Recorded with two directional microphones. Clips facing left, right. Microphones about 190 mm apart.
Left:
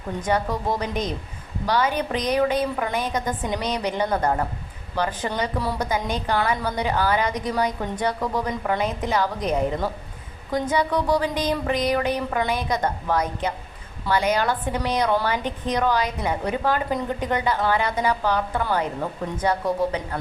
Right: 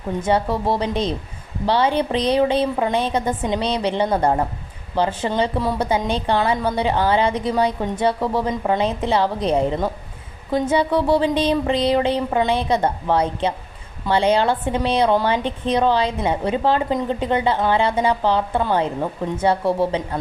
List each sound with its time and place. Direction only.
0.2 s a woman's voice: 25° right (ahead or behind)